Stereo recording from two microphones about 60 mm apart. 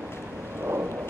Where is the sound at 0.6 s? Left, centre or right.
Right.